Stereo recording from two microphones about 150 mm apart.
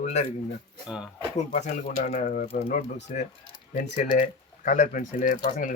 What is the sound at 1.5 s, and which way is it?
Speech, 55° left (ahead or behind).